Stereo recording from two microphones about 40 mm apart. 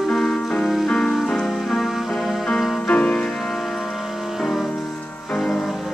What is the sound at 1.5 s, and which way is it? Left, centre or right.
Music, centre.